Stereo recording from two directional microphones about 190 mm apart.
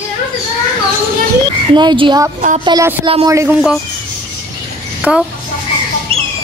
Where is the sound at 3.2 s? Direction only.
15° right (ahead or behind).